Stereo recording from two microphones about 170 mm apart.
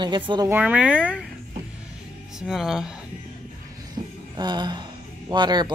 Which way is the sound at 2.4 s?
5° right (ahead or behind).